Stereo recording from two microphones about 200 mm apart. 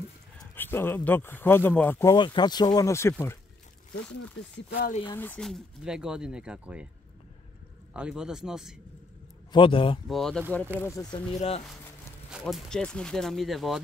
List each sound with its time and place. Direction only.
0.4 s speech: 10° left (ahead or behind)
2.1 s speech: 25° left (ahead or behind)
4.7 s speech: 45° left (ahead or behind)
5.1 s speech: 10° left (ahead or behind)
7.9 s speech: 5° right (ahead or behind)
9.5 s speech: 25° left (ahead or behind)
10.0 s speech: centre (ahead or behind)
10.8 s speech: 15° left (ahead or behind)
11.3 s speech: 30° left (ahead or behind)
12.3 s speech: centre (ahead or behind)